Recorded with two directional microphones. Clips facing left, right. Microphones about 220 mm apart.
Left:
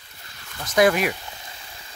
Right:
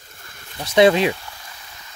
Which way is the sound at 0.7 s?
25° right (ahead or behind).